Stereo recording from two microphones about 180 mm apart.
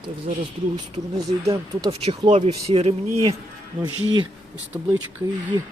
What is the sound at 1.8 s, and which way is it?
Speech, 30° right (ahead or behind).